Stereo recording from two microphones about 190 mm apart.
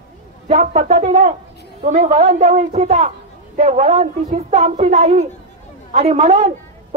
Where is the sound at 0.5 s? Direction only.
35° right (ahead or behind).